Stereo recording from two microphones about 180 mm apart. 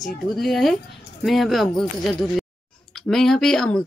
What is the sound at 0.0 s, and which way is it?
Speech, centre (ahead or behind).